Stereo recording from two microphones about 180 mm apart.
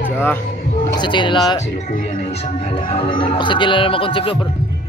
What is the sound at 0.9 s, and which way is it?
Speech, 25° left (ahead or behind).